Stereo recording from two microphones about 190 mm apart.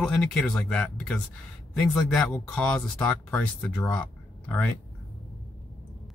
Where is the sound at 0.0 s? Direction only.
5° left (ahead or behind).